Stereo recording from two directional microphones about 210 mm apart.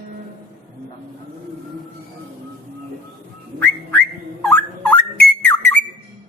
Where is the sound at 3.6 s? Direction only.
10° left (ahead or behind).